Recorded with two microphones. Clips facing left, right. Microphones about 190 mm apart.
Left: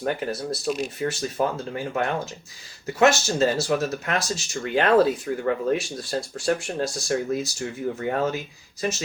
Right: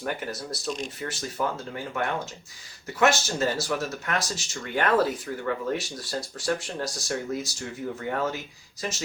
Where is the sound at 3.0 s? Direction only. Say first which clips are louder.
Left 4 dB; 25° left (ahead or behind).